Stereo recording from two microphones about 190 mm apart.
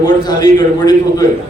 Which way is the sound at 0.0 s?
20° left (ahead or behind).